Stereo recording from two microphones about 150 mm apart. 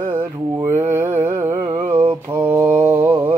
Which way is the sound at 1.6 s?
50° right (ahead or behind).